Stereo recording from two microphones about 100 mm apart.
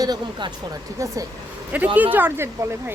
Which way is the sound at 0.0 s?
45° right (ahead or behind).